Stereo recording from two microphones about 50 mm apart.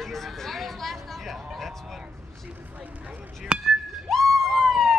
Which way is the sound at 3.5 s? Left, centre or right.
Centre.